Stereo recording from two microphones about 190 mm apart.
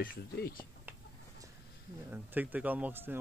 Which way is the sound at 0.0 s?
50° left (ahead or behind).